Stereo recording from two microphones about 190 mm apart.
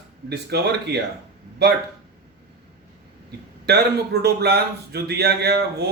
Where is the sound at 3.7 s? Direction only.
60° right (ahead or behind).